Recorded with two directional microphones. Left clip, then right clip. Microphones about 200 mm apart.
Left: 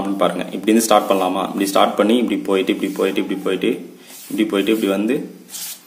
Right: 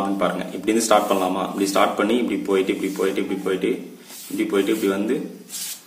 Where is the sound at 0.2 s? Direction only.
35° left (ahead or behind).